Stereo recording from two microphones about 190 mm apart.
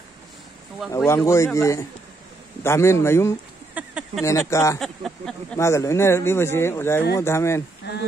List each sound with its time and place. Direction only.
0.9 s speech: 15° left (ahead or behind)
3.7 s a sound: 5° right (ahead or behind)
4.2 s speech: 15° left (ahead or behind)
4.7 s speech: centre (ahead or behind)
5.6 s speech: 15° left (ahead or behind)